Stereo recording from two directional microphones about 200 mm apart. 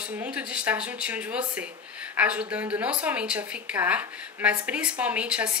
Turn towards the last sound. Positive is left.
turn(degrees=-5)  # may be behind; listen again after turning